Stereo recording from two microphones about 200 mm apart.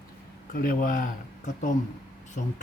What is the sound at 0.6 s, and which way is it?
Speech, 40° left (ahead or behind).